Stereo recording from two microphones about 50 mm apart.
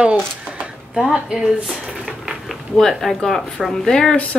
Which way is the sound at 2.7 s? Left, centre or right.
Centre.